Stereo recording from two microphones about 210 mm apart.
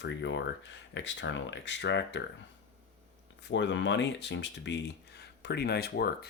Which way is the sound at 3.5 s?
60° left (ahead or behind).